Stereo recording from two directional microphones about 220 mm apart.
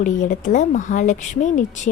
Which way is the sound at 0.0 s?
35° left (ahead or behind).